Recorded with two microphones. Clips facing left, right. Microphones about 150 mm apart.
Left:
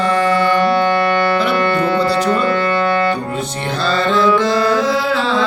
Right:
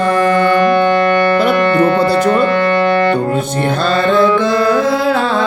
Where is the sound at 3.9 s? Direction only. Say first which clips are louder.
Right 2 dB; 55° right (ahead or behind).